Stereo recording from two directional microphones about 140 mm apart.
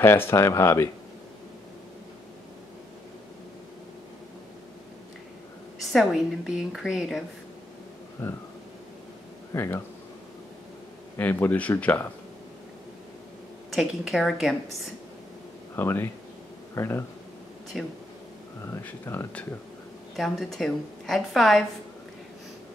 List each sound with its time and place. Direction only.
0.0 s speech: 15° left (ahead or behind)
5.9 s a woman's voice: centre (ahead or behind)
8.2 s speech: 15° left (ahead or behind)
9.5 s speech: 15° left (ahead or behind)
11.1 s speech: 15° left (ahead or behind)
13.7 s a woman's voice: centre (ahead or behind)
15.7 s speech: 15° left (ahead or behind)
17.7 s a woman's voice: centre (ahead or behind)
18.7 s speech: 15° left (ahead or behind)
20.2 s a woman's voice: centre (ahead or behind)